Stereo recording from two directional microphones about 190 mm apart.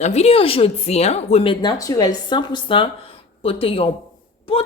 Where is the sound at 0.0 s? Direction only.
35° left (ahead or behind).